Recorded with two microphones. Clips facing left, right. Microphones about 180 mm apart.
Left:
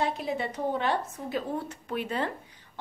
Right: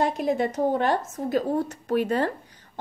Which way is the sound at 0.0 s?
45° right (ahead or behind).